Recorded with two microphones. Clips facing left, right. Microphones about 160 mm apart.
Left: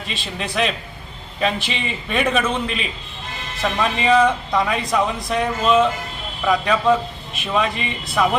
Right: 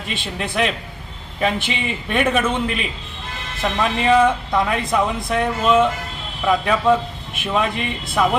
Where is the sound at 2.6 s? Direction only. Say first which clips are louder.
Right 2 dB; 60° right (ahead or behind).